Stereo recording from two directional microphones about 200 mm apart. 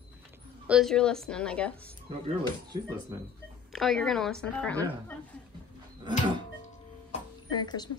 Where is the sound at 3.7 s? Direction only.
Centre (ahead or behind).